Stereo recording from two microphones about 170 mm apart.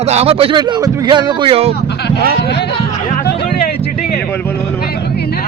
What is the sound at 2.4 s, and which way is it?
Speech, 80° left.